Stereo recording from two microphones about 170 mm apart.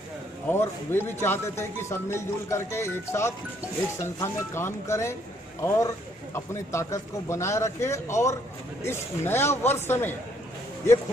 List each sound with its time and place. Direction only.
0.5 s speech: 15° left (ahead or behind)